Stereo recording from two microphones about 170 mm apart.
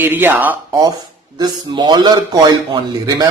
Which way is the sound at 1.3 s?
25° right (ahead or behind).